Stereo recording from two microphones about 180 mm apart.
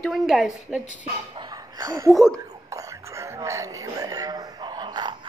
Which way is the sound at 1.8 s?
20° right (ahead or behind).